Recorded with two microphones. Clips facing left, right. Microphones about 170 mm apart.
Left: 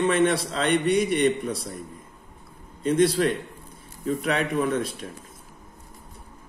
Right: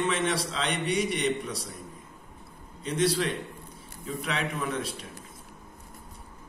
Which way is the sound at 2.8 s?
50° left (ahead or behind).